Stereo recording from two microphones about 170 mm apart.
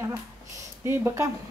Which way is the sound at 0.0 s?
15° right (ahead or behind).